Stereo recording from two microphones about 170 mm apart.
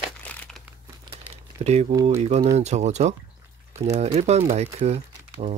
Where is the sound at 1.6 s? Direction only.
40° right (ahead or behind).